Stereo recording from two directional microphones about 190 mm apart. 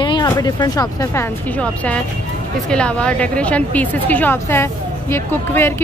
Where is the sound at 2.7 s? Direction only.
5° left (ahead or behind).